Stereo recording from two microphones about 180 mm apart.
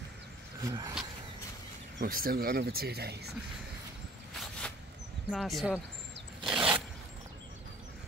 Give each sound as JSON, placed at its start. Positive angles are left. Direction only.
{"t": 0.6, "sound": "speech", "side_deg": -20}
{"t": 2.0, "sound": "speech", "side_deg": -55}
{"t": 4.4, "sound": "a sound", "side_deg": 5}
{"t": 5.3, "sound": "speech", "side_deg": 0}
{"t": 6.4, "sound": "zipper", "side_deg": -5}